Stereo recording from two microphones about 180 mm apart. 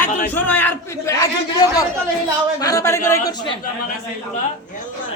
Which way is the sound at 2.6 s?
20° left (ahead or behind).